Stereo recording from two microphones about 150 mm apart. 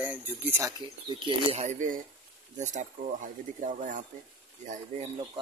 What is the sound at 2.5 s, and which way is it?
Speech, 55° right (ahead or behind).